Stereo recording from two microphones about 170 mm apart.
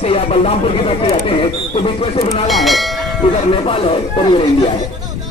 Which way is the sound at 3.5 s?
30° left (ahead or behind).